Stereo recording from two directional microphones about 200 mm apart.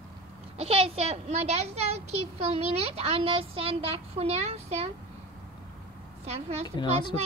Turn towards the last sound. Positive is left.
turn(degrees=20)  # may be behind; listen again after turning